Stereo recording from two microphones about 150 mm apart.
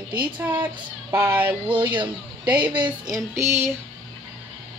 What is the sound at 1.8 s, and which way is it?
Speech, 30° right (ahead or behind).